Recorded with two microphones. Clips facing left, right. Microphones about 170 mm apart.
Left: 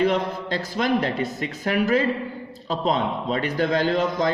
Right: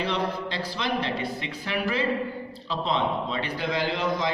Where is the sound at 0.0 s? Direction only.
45° left (ahead or behind).